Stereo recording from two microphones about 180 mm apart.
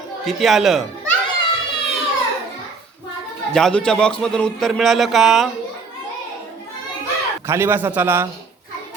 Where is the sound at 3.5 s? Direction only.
5° left (ahead or behind).